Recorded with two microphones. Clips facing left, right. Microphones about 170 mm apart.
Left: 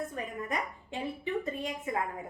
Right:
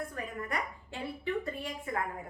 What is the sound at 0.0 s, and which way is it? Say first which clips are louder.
A woman's voice: left 2 dB; 20° left (ahead or behind).